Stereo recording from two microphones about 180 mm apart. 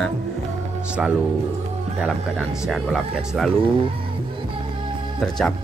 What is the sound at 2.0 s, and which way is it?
Speech, centre (ahead or behind).